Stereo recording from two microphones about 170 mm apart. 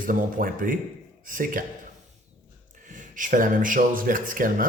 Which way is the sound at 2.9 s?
50° right (ahead or behind).